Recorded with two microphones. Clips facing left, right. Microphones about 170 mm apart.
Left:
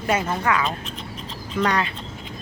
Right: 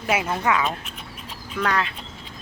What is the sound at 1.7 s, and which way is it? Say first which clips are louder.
Speech: right 1 dB; centre (ahead or behind).